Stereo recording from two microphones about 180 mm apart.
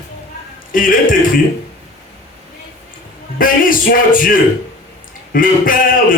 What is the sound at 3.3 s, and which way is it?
Speech, 50° left (ahead or behind).